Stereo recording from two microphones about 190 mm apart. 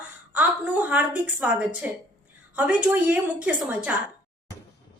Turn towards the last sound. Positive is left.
turn(degrees=-5)  # may be behind; listen again after turning